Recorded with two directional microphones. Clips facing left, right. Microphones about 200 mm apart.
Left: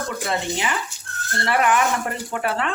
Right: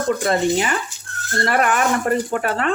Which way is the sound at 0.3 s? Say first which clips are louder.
Right 5 dB; 45° right (ahead or behind).